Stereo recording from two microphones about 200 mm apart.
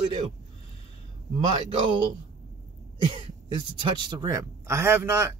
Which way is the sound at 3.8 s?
25° right (ahead or behind).